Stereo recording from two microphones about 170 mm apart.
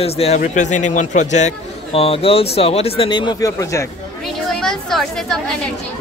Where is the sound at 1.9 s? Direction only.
35° left (ahead or behind).